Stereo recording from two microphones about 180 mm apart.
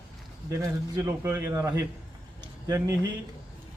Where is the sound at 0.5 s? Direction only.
15° right (ahead or behind).